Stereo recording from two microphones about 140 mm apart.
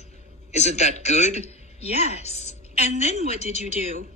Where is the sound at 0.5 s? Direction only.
50° left (ahead or behind).